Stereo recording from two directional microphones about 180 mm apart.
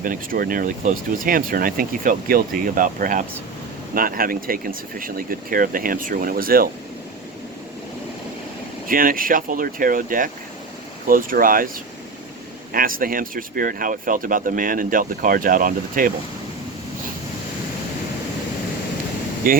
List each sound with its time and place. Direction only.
0.0 s speech: 50° right (ahead or behind)
8.9 s speech: 50° right (ahead or behind)
12.7 s speech: 50° right (ahead or behind)
19.4 s speech: 50° right (ahead or behind)